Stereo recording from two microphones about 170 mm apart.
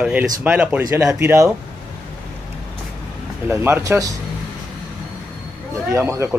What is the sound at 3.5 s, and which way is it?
Speech, 15° right (ahead or behind).